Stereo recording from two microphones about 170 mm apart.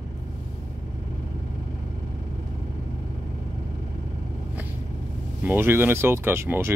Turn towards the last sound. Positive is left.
turn(degrees=-15)  # may be behind; listen again after turning